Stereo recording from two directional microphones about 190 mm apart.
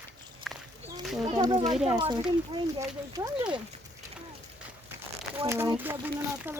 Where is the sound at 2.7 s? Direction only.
20° right (ahead or behind).